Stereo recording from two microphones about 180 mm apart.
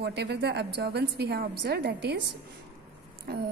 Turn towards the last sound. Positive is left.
turn(degrees=-65)  # may be behind; listen again after turning